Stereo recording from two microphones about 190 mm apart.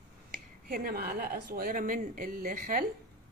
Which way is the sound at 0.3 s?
50° right (ahead or behind).